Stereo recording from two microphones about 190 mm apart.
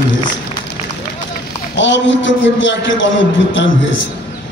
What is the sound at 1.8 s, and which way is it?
A man's voice, 75° left (ahead or behind).